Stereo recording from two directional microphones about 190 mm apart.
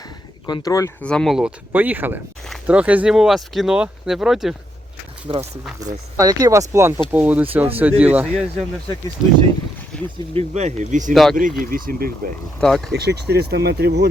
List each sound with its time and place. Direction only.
0.4 s speech: 20° left (ahead or behind)
1.0 s speech: 5° left (ahead or behind)
5.3 s speech: 30° right (ahead or behind); by 8.6 s centre (ahead or behind)
9.9 s speech: 5° left (ahead or behind)
10.3 s speech: 35° right (ahead or behind)
11.1 s speech: centre (ahead or behind)
11.3 s speech: 45° right (ahead or behind)
12.5 s speech: centre (ahead or behind)
12.9 s speech: 60° right (ahead or behind)